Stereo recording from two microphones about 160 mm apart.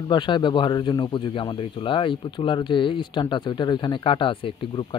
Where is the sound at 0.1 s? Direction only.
30° left (ahead or behind).